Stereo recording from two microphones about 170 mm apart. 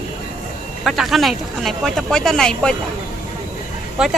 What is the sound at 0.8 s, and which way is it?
Speech, centre (ahead or behind).